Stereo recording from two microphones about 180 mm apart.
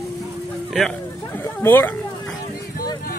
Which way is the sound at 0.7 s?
5° left (ahead or behind).